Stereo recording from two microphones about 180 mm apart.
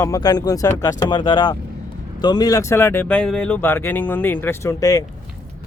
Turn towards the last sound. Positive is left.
turn(degrees=20)  # may be behind; listen again after turning